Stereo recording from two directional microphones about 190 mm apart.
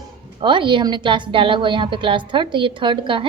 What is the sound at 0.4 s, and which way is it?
A woman's voice, 25° right (ahead or behind).